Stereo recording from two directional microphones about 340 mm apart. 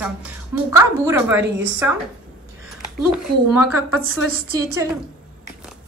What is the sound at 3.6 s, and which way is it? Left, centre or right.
A woman's voice, centre.